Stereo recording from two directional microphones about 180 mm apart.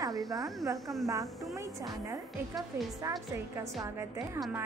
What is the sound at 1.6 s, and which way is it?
A woman's voice, 20° right (ahead or behind).